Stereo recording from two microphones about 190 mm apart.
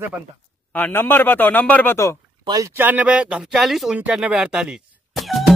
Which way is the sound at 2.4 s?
20° right (ahead or behind).